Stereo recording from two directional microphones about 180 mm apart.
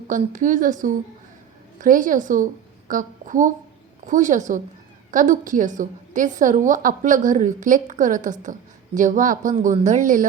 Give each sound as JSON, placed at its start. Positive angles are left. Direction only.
{"t": 0.1, "sound": "a woman's voice", "side_deg": -45}